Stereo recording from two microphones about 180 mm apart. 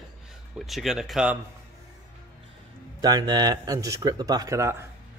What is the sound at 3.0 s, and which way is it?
Speech, 20° right (ahead or behind).